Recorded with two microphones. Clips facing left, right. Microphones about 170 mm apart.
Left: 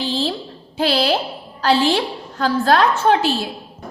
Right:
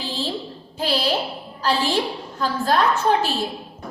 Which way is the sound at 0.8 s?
80° left.